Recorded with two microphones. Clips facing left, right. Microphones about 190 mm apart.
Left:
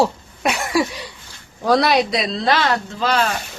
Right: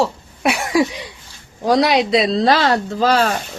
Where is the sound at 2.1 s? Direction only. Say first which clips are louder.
Right 5 dB; 30° right (ahead or behind).